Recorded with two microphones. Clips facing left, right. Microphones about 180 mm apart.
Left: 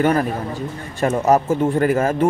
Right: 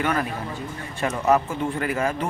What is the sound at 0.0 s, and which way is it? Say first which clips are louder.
Speech: left 7 dB; 40° left (ahead or behind).